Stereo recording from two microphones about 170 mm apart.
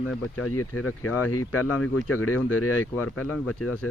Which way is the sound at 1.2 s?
15° left (ahead or behind).